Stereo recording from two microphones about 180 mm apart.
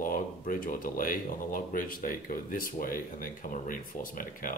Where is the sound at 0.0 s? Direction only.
50° left (ahead or behind).